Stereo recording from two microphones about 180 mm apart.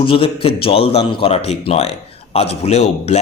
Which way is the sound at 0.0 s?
30° left (ahead or behind).